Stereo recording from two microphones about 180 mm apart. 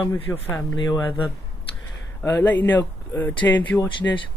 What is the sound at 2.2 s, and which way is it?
Speech, 10° left (ahead or behind).